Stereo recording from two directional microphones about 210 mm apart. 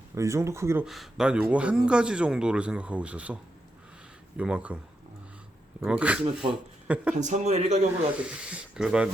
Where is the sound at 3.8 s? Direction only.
5° right (ahead or behind).